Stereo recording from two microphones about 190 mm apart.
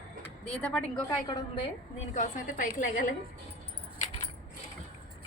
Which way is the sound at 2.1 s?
40° left (ahead or behind).